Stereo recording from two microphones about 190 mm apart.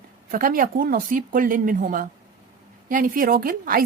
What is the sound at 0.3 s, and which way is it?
A woman's voice, 50° right (ahead or behind).